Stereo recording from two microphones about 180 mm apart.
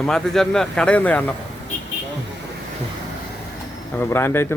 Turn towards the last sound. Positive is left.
turn(degrees=15)  # may be behind; listen again after turning